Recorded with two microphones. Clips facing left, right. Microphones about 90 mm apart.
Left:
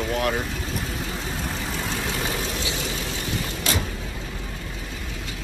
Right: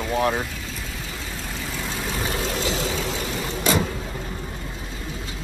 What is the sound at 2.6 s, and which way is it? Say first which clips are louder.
Vehicle: right 4 dB; 40° right (ahead or behind).